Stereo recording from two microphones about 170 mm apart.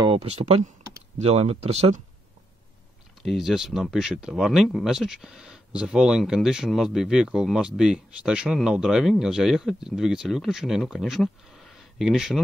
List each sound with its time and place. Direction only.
0.0 s speech: 35° right (ahead or behind)
3.2 s speech: centre (ahead or behind)